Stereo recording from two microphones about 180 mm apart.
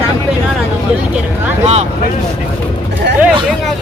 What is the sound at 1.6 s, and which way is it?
Speech, 35° right (ahead or behind).